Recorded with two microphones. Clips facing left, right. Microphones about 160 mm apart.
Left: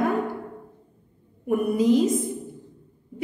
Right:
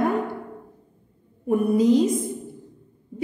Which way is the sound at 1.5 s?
30° right (ahead or behind).